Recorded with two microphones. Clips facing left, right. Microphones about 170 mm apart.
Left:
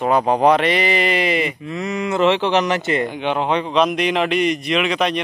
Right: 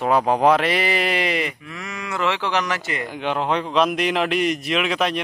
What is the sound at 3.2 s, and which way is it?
Speech, centre (ahead or behind).